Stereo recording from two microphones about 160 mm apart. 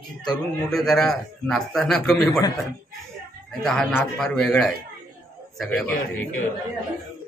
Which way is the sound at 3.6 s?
5° left (ahead or behind).